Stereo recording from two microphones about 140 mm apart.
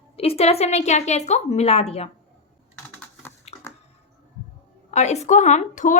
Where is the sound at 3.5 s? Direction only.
50° left (ahead or behind).